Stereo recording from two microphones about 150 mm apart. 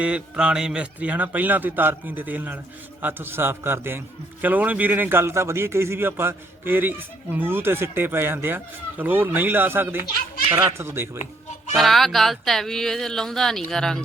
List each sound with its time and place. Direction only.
0.0 s a man's voice: 5° right (ahead or behind)
11.8 s speech: centre (ahead or behind)